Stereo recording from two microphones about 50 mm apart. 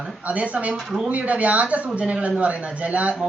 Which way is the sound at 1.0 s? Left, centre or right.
Right.